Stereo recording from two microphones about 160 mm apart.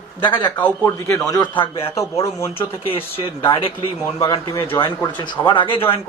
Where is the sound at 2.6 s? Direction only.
35° left (ahead or behind).